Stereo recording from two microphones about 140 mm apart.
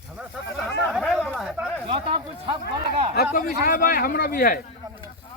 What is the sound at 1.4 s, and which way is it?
Speech, 5° right (ahead or behind).